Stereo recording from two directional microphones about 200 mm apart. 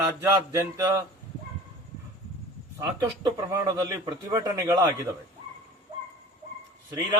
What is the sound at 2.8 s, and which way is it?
A man's voice, 15° right (ahead or behind).